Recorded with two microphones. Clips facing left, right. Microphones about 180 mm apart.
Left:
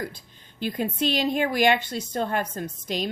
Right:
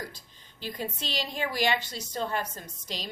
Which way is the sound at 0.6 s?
55° left (ahead or behind).